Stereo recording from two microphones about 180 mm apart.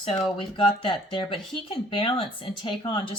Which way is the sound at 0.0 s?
30° left (ahead or behind).